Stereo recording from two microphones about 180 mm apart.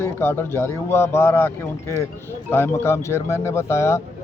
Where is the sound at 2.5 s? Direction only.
15° left (ahead or behind).